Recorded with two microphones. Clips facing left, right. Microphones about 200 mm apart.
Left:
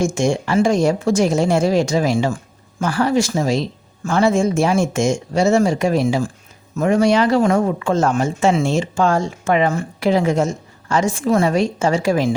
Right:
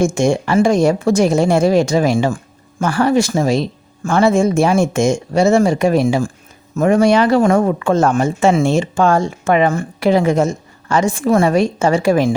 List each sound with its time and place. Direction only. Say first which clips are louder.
0.0 s speech: right 3 dB; 60° right (ahead or behind)